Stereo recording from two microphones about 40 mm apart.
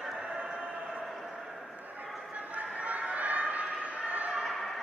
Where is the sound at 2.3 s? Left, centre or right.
Right.